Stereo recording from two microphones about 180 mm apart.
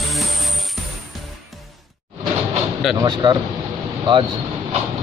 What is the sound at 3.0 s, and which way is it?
Speech, 25° right (ahead or behind).